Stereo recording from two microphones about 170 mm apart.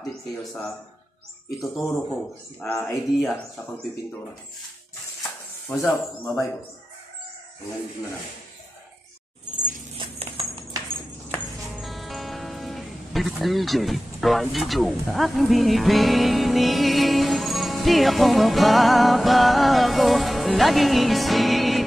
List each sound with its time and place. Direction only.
0.4 s speech: centre (ahead or behind)
5.9 s speech: 5° left (ahead or behind)
9.9 s a sound: 35° right (ahead or behind)
11.3 s music: centre (ahead or behind)